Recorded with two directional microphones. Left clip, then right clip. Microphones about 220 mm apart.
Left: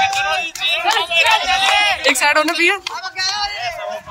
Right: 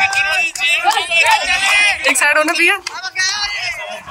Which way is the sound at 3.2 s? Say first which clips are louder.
Right 2 dB; 45° left (ahead or behind).